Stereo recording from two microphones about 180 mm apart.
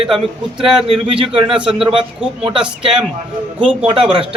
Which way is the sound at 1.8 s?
30° right (ahead or behind).